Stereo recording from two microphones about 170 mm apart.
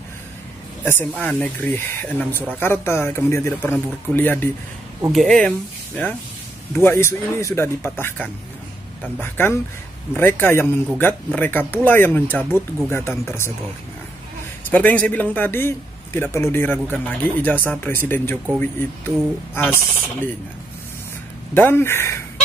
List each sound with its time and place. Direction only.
0.8 s a man's voice: 10° left (ahead or behind)
6.7 s a man's voice: 15° left (ahead or behind)
14.7 s a man's voice: 10° left (ahead or behind)
21.5 s a man's voice: 10° left (ahead or behind)